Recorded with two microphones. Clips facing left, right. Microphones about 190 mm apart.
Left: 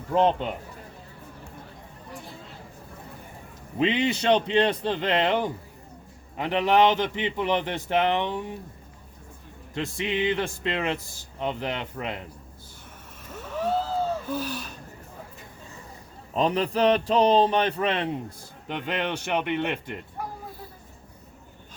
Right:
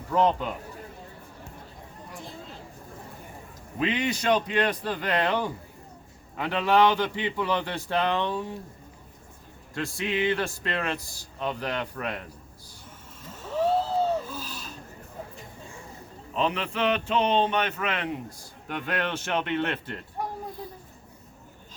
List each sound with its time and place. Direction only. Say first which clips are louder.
0.1 s speech: left 1 dB; 25° left (ahead or behind)
3.8 s speech: left 3 dB; 25° left (ahead or behind)
9.7 s speech: left 1 dB; 20° left (ahead or behind)
14.3 s gasp: left 8 dB; 60° left (ahead or behind)
16.3 s a man's voice: left 4 dB; 40° left (ahead or behind)
18.7 s speech: left 1 dB; 20° left (ahead or behind)